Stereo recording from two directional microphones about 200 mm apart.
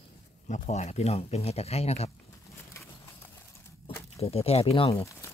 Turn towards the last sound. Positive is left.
turn(degrees=10)  # may be behind; listen again after turning